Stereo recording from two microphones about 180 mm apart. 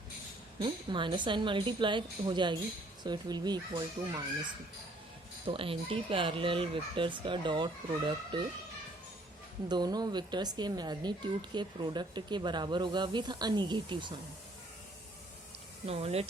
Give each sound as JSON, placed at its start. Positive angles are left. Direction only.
{"t": 0.6, "sound": "speech", "side_deg": -25}
{"t": 5.5, "sound": "speech", "side_deg": -30}
{"t": 9.6, "sound": "speech", "side_deg": -20}
{"t": 15.9, "sound": "speech", "side_deg": -35}